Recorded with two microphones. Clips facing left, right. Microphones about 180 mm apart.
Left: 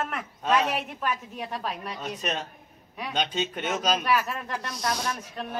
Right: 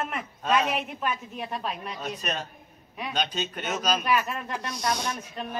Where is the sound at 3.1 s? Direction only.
20° left (ahead or behind).